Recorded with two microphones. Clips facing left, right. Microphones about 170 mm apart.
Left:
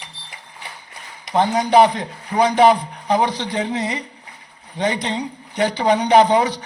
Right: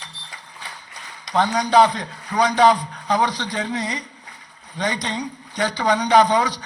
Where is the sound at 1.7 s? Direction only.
20° left (ahead or behind).